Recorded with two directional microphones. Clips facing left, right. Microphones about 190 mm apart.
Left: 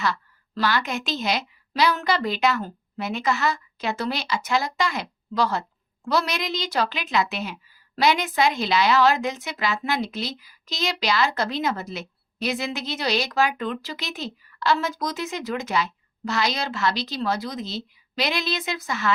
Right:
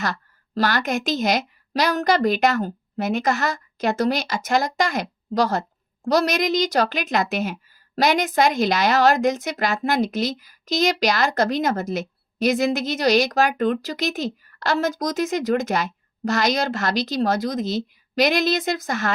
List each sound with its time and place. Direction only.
0.0 s a woman's voice: 45° right (ahead or behind)